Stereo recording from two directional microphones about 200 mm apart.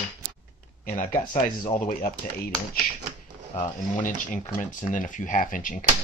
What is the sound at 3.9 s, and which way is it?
Speech, 40° left (ahead or behind).